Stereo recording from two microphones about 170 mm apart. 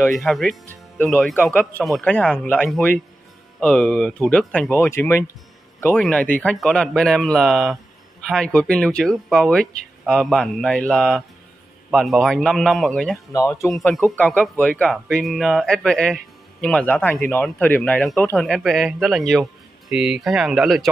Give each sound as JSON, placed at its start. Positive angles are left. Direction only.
{"t": 0.1, "sound": "a man's voice", "side_deg": 0}
{"t": 13.3, "sound": "speech", "side_deg": 20}
{"t": 13.7, "sound": "a man's voice", "side_deg": 0}